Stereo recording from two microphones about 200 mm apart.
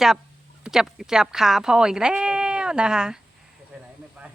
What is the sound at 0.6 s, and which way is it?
Speech, 5° right (ahead or behind).